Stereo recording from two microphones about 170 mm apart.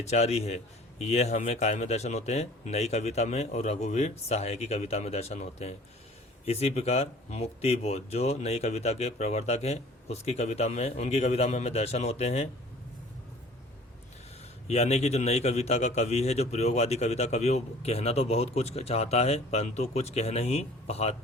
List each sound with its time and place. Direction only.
0.0 s a man's voice: 40° left (ahead or behind)
14.7 s a man's voice: 40° left (ahead or behind)